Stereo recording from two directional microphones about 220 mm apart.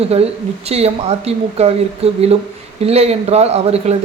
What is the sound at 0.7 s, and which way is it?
A man's voice, 30° right (ahead or behind).